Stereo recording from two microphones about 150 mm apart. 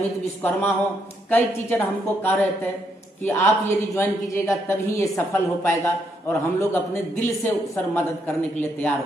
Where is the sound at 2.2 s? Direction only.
15° left (ahead or behind).